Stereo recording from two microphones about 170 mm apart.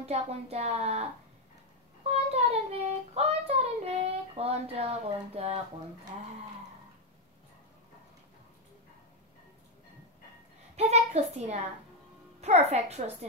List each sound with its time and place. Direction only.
0.0 s speech: 35° right (ahead or behind)
2.0 s speech: 40° right (ahead or behind)
2.7 s child singing: 35° right (ahead or behind)
10.8 s a sound: 40° right (ahead or behind)
12.4 s speech: 40° right (ahead or behind)